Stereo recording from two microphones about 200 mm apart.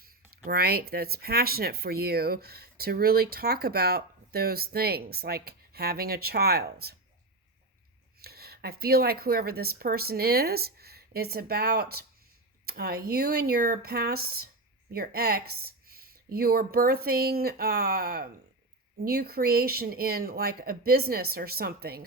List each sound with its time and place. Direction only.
0.0 s speech: 50° right (ahead or behind)
8.2 s speech: 50° right (ahead or behind)